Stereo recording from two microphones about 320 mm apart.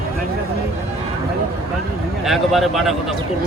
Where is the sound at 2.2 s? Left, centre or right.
Centre.